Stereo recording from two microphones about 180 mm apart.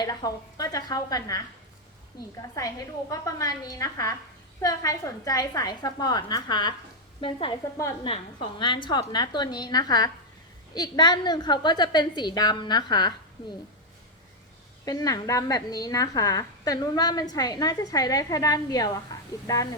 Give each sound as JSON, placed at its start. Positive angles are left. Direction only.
{"t": 0.0, "sound": "a woman's voice", "side_deg": 20}
{"t": 14.8, "sound": "a woman's voice", "side_deg": 20}